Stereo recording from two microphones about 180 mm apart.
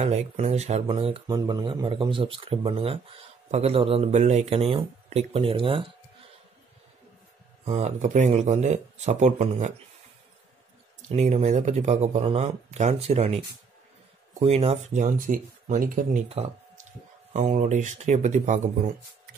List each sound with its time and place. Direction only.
0.0 s speech: 35° right (ahead or behind)
7.6 s speech: 35° right (ahead or behind)
11.1 s speech: 35° right (ahead or behind)